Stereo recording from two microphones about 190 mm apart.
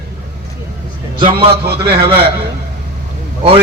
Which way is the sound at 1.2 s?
30° right (ahead or behind).